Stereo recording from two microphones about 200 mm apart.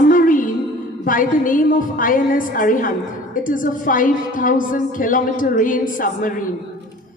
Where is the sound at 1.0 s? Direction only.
45° left (ahead or behind).